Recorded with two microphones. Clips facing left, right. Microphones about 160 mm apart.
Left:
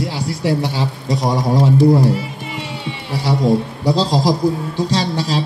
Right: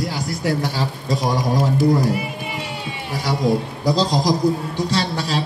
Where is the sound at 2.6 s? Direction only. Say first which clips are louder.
Left 2 dB; 30° left (ahead or behind).